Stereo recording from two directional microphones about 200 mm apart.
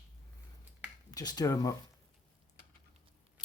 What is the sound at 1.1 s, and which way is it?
Speech, 20° left (ahead or behind).